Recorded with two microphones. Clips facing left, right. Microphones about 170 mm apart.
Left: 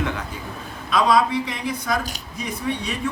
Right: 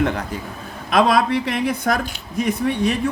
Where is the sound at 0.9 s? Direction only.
60° right (ahead or behind).